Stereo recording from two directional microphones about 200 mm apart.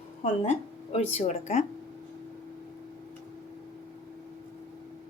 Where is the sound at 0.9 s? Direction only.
35° left (ahead or behind).